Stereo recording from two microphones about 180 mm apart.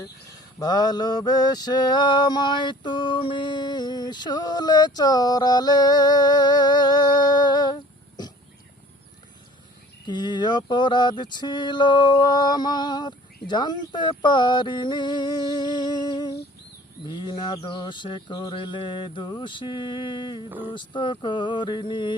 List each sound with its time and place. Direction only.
0.6 s mantra: 20° left (ahead or behind)
10.1 s mantra: 25° left (ahead or behind)